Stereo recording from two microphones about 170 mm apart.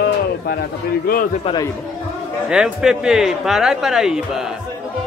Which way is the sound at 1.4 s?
25° left (ahead or behind).